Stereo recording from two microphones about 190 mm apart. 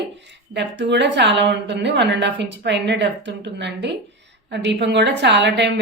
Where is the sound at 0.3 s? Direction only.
65° right (ahead or behind).